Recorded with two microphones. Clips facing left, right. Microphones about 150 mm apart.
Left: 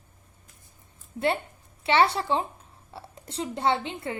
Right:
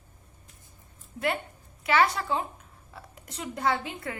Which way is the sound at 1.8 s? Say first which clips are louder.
Left 2 dB; 30° left (ahead or behind).